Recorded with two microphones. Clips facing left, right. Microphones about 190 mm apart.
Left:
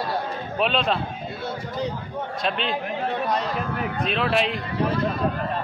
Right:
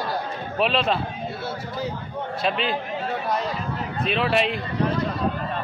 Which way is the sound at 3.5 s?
65° left (ahead or behind).